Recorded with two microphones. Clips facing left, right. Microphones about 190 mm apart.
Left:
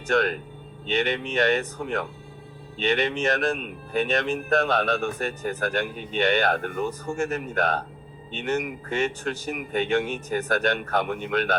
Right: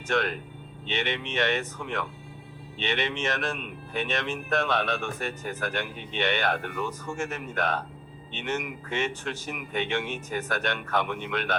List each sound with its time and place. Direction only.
0.1 s speech: 40° left (ahead or behind)